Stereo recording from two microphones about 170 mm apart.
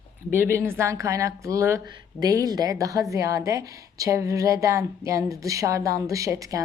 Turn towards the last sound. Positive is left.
turn(degrees=-20)  # may be behind; listen again after turning